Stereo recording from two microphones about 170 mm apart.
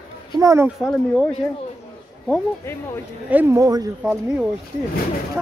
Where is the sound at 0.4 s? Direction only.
20° right (ahead or behind).